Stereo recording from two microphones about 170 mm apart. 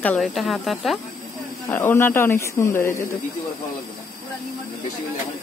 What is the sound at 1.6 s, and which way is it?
Speech, 15° left (ahead or behind).